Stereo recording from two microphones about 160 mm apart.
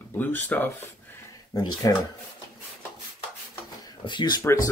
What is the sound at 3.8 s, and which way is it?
Speech, 30° left (ahead or behind).